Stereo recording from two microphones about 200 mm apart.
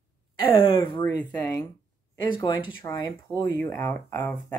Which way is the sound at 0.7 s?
25° left (ahead or behind).